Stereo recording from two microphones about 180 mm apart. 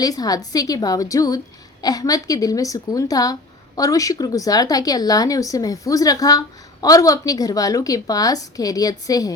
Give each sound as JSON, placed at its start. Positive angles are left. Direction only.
{"t": 0.0, "sound": "speech", "side_deg": 20}